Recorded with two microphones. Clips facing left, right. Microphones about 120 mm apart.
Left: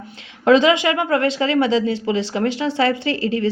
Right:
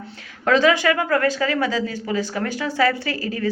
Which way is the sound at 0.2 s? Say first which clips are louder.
Left 4 dB; 20° left (ahead or behind).